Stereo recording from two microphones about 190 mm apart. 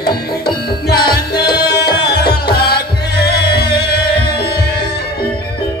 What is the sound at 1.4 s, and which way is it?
Tabla, 55° left (ahead or behind).